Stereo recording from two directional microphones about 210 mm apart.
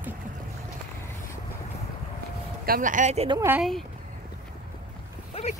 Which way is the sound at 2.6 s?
40° right (ahead or behind).